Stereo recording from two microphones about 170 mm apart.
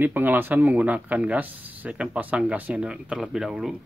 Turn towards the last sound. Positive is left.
turn(degrees=-5)  # may be behind; listen again after turning